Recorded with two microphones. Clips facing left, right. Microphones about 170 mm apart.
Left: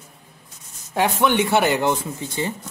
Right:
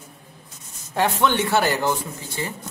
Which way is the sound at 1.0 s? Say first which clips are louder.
Left 2 dB; 15° left (ahead or behind).